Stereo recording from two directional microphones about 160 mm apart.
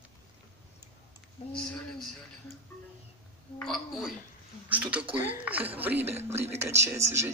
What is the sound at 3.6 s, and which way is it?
Speech, centre (ahead or behind).